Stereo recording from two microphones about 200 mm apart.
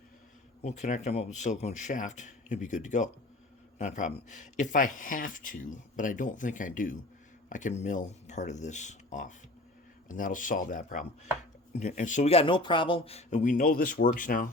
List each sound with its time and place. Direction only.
0.6 s speech: 35° left (ahead or behind)